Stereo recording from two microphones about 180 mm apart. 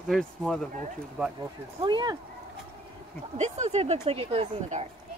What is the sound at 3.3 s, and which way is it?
Speech, 40° right (ahead or behind).